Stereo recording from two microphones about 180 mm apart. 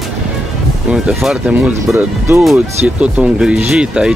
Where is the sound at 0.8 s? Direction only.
5° right (ahead or behind).